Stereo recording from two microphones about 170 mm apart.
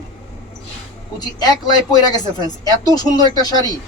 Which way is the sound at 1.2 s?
25° left (ahead or behind).